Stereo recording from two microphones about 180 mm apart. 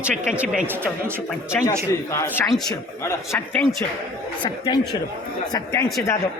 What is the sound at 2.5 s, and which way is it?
Speech, centre (ahead or behind).